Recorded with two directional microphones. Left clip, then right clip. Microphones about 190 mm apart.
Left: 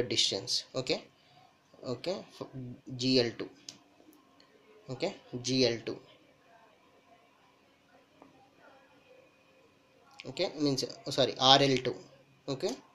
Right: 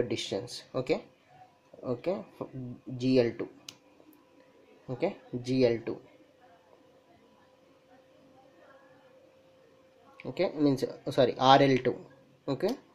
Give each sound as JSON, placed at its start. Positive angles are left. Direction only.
{"t": 0.1, "sound": "speech", "side_deg": -15}
{"t": 4.8, "sound": "speech", "side_deg": -20}
{"t": 10.2, "sound": "speech", "side_deg": -25}